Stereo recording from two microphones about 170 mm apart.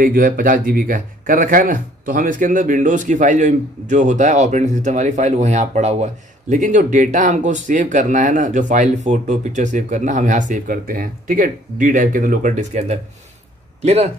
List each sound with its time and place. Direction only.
0.0 s speech: 55° right (ahead or behind); by 14.0 s 40° right (ahead or behind)